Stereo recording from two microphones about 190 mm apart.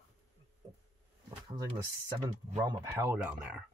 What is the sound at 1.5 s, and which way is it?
Speech, 25° right (ahead or behind).